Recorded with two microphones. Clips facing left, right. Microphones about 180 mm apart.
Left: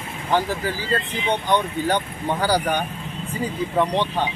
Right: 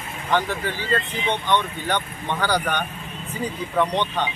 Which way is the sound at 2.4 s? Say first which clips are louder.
Left 2 dB; 10° left (ahead or behind).